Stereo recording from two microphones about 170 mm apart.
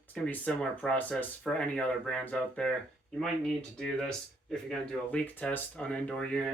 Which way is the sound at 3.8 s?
5° left (ahead or behind).